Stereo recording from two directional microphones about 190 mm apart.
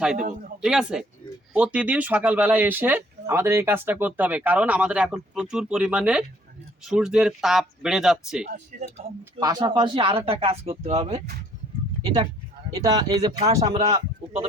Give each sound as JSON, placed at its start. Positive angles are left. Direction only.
{"t": 0.2, "sound": "a man's voice", "side_deg": -45}
{"t": 0.6, "sound": "speech", "side_deg": -5}
{"t": 8.7, "sound": "a man's voice", "side_deg": -45}
{"t": 9.4, "sound": "speech", "side_deg": -20}
{"t": 12.0, "sound": "speech", "side_deg": -20}
{"t": 13.4, "sound": "speech", "side_deg": -35}